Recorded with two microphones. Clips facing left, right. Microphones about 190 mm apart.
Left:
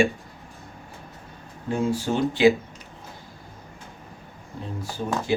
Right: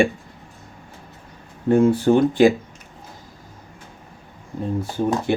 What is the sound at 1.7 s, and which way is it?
Speech, 55° right (ahead or behind).